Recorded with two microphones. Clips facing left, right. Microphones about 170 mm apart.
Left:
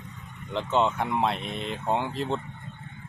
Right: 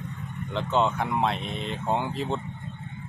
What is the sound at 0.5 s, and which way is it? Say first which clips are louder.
Speech: even; centre (ahead or behind).